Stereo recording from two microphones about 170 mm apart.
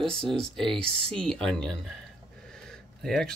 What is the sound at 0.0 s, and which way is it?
Speech, 5° left (ahead or behind).